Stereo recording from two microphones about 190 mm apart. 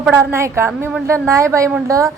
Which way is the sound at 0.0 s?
10° right (ahead or behind).